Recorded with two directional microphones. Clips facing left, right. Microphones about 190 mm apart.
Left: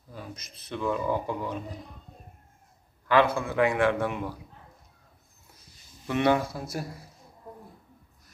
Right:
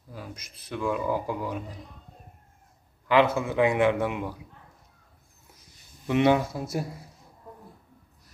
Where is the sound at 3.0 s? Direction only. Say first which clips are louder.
Right 1 dB; 20° right (ahead or behind).